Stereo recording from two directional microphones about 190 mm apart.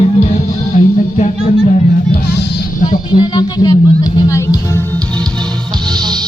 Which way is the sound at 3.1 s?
20° left (ahead or behind).